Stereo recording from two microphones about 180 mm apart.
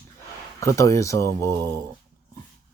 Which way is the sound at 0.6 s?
15° left (ahead or behind).